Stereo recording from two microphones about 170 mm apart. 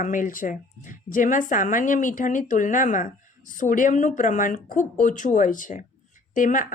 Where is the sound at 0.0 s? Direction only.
50° left (ahead or behind).